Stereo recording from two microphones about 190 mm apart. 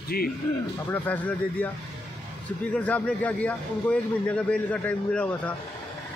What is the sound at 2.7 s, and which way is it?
A man's voice, 5° left (ahead or behind).